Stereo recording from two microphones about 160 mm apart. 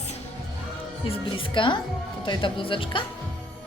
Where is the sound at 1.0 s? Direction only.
35° left (ahead or behind).